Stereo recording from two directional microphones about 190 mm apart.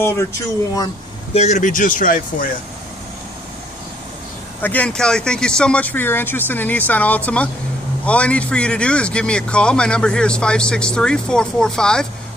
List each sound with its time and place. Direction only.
0.0 s speech: 15° left (ahead or behind)
1.3 s speech: 35° left (ahead or behind)
4.6 s a man's voice: 10° left (ahead or behind)